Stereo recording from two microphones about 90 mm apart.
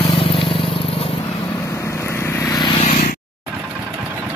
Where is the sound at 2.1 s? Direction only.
35° left (ahead or behind).